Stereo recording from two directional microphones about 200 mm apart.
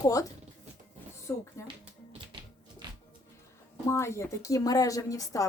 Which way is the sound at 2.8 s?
20° right (ahead or behind).